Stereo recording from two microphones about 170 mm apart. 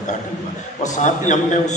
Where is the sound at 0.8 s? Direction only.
45° left (ahead or behind).